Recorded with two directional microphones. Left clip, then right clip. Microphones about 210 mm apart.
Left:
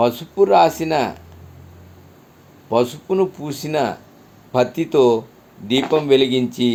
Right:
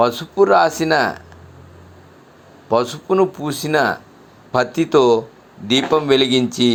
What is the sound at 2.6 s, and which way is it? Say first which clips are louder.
A man's voice: right 1 dB; 5° right (ahead or behind).